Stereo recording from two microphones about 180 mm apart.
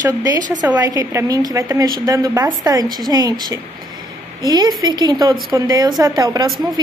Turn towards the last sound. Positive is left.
turn(degrees=-20)  # may be behind; listen again after turning